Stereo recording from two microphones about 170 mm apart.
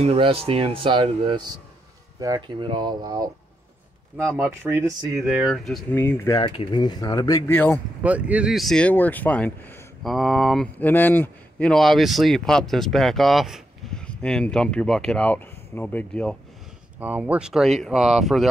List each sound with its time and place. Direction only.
0.0 s speech: 35° right (ahead or behind)
4.4 s speech: 15° right (ahead or behind)
5.9 s speech: 15° left (ahead or behind)
6.3 s speech: 25° left (ahead or behind); by 7.8 s 10° left (ahead or behind)
8.0 s speech: 10° right (ahead or behind)
17.0 s speech: 10° right (ahead or behind)